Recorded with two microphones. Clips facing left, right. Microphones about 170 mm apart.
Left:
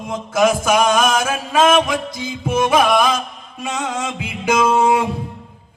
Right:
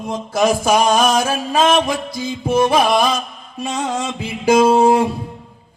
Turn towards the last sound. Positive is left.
turn(degrees=-30)  # may be behind; listen again after turning